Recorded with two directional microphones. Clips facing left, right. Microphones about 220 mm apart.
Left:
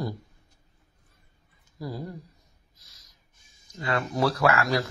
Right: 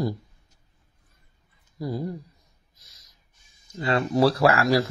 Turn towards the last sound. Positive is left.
turn(degrees=-30)  # may be behind; listen again after turning